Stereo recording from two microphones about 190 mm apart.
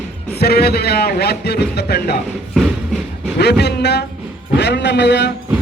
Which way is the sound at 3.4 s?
60° left (ahead or behind).